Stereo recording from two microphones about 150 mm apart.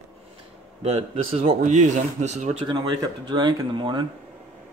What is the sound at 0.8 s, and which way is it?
Speech, 40° right (ahead or behind).